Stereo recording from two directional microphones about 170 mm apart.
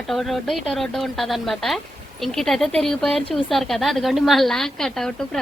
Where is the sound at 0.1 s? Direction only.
Centre (ahead or behind).